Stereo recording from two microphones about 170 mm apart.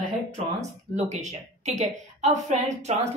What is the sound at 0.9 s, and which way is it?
A woman's voice, 45° right (ahead or behind).